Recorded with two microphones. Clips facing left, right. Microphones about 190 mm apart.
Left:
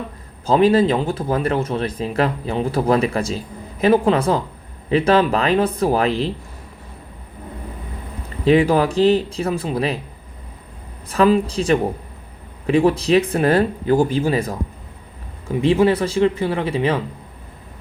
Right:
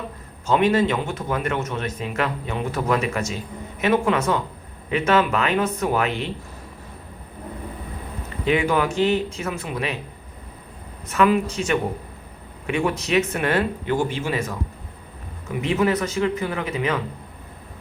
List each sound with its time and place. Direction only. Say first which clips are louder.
0.4 s a man's voice: left 4 dB; 35° left (ahead or behind)
8.4 s a man's voice: left 6 dB; 35° left (ahead or behind)
11.1 s a man's voice: left 3 dB; 30° left (ahead or behind)